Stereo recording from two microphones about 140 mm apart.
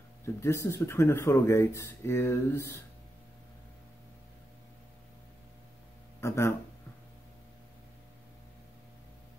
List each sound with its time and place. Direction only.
0.2 s speech: 20° left (ahead or behind)
6.2 s speech: 20° left (ahead or behind)